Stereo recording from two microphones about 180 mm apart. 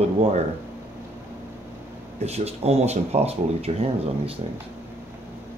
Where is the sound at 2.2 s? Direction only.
35° right (ahead or behind).